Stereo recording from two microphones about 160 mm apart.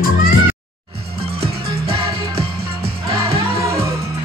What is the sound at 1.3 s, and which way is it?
Music, 75° right (ahead or behind).